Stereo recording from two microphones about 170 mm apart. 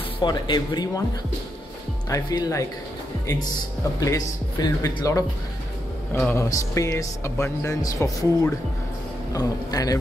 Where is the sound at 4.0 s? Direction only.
20° left (ahead or behind).